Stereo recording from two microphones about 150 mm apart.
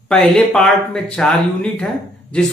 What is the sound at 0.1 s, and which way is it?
Speech, 5° left (ahead or behind).